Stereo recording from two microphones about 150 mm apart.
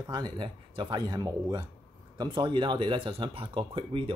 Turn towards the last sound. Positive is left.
turn(degrees=-35)  # may be behind; listen again after turning